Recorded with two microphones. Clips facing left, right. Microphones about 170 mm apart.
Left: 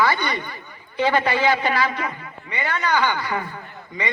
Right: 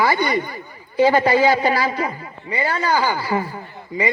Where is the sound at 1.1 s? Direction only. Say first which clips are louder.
Right 3 dB; 35° right (ahead or behind).